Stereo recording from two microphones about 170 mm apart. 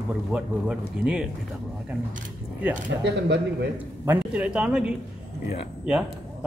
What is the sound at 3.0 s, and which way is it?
Speech, 90° right.